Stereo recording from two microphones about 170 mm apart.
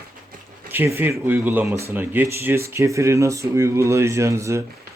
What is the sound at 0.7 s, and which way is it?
Speech, 10° right (ahead or behind).